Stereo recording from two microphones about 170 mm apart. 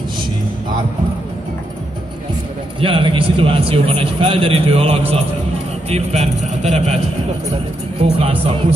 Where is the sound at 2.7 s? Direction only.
30° right (ahead or behind).